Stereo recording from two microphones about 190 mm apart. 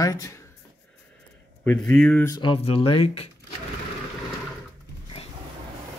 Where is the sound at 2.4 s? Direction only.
30° left (ahead or behind).